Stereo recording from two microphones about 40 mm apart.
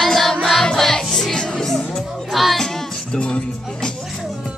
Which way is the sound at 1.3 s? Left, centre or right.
Centre.